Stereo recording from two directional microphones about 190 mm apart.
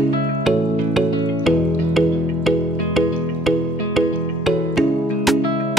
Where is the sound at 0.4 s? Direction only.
Centre (ahead or behind).